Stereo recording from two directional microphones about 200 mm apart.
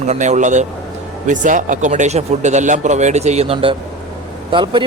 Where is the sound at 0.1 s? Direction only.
35° right (ahead or behind).